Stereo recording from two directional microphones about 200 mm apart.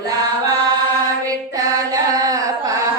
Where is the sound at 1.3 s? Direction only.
15° right (ahead or behind).